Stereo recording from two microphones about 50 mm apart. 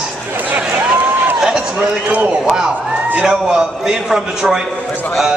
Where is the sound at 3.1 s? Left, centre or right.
Centre.